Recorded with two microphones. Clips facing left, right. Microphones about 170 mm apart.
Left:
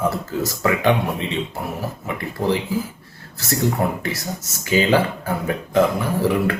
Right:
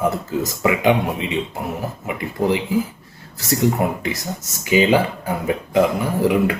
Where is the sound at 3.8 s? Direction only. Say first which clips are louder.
Right 1 dB; 15° right (ahead or behind).